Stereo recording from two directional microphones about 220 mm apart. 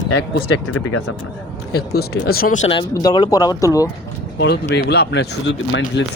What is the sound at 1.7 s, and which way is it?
Speech, 45° left (ahead or behind).